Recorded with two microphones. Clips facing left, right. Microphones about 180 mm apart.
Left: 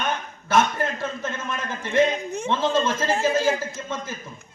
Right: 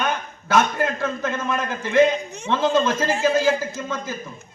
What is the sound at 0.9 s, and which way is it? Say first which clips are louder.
A man's voice: right 4 dB; 60° right (ahead or behind).